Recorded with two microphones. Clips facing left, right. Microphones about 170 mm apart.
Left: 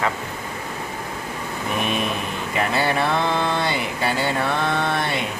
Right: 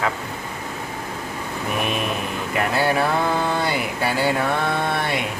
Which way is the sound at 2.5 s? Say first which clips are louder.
Right 1 dB; centre (ahead or behind).